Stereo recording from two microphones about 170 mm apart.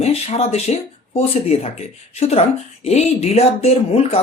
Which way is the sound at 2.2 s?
35° left (ahead or behind).